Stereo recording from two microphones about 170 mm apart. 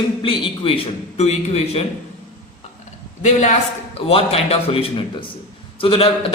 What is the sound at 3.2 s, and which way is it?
A man's voice, 45° left (ahead or behind).